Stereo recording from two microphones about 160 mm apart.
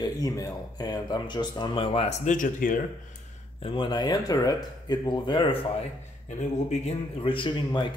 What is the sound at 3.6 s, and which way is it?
Speech, 30° left (ahead or behind).